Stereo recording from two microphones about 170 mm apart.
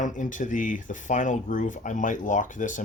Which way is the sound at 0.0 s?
50° left (ahead or behind).